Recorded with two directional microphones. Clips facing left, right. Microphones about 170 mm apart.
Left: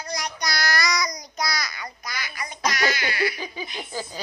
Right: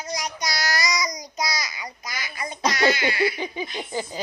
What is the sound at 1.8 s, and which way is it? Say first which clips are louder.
Baby laughter: even; 20° right (ahead or behind).